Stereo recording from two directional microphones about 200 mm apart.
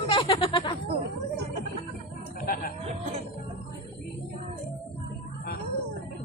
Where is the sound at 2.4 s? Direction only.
45° left (ahead or behind).